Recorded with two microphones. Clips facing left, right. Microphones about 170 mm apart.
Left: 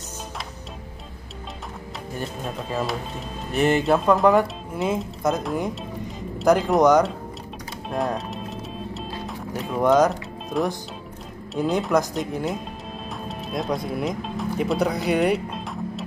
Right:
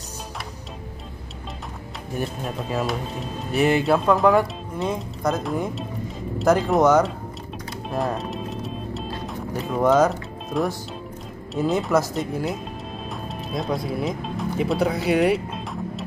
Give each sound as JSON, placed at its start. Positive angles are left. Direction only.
{"t": 2.4, "sound": "speech", "side_deg": -5}
{"t": 7.9, "sound": "music", "side_deg": 0}
{"t": 11.5, "sound": "speech", "side_deg": 0}